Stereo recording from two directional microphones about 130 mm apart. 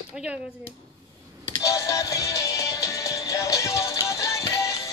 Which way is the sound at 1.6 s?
25° left (ahead or behind).